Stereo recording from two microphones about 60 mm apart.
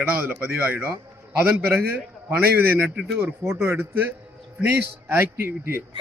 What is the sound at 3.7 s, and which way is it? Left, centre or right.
A man's voice, right.